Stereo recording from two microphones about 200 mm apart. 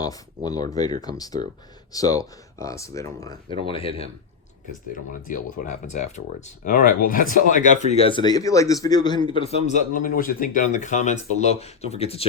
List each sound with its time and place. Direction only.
0.0 s speech: 20° left (ahead or behind)
4.9 s speech: 40° left (ahead or behind)